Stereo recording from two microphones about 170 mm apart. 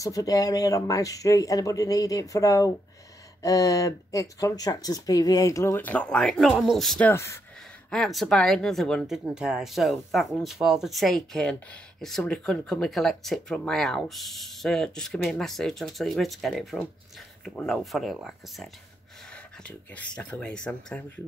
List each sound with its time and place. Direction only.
0.0 s speech: 20° left (ahead or behind); by 7.1 s centre (ahead or behind)
7.1 s speech: 15° left (ahead or behind)
7.9 s speech: centre (ahead or behind)